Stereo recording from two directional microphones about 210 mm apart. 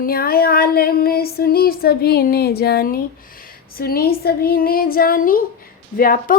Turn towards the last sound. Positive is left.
turn(degrees=45)  # may be behind; listen again after turning